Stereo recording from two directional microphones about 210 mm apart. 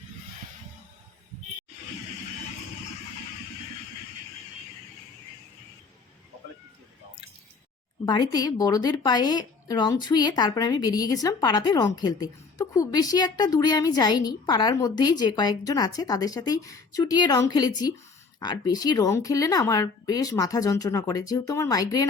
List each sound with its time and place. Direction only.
8.0 s a woman's voice: 20° left (ahead or behind)